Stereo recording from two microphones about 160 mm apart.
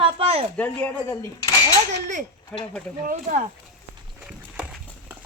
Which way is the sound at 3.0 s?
55° right (ahead or behind).